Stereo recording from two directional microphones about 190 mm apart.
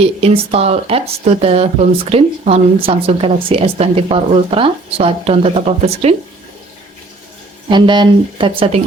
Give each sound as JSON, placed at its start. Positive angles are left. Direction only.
{"t": 0.0, "sound": "speech", "side_deg": -30}
{"t": 7.7, "sound": "speech", "side_deg": -25}